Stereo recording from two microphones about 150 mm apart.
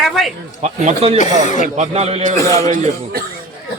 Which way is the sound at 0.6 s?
45° right (ahead or behind).